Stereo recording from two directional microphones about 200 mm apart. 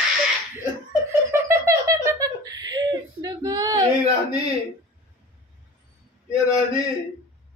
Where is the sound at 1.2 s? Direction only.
15° right (ahead or behind).